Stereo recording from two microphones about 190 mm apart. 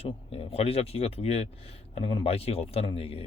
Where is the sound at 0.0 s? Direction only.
30° left (ahead or behind).